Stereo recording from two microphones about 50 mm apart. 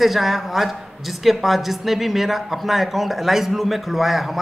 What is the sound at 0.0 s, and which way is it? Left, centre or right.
Speech, centre.